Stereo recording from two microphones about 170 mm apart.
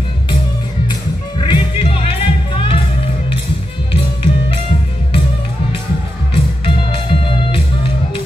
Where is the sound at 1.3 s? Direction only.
30° left (ahead or behind).